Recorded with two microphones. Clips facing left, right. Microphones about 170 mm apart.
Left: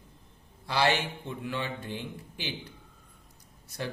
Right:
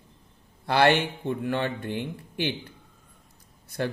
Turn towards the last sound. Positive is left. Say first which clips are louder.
# right 7 dB
turn(degrees=-55)  # may be behind; listen again after turning